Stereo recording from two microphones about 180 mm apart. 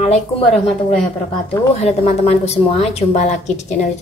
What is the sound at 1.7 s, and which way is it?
A woman's voice, 35° left (ahead or behind).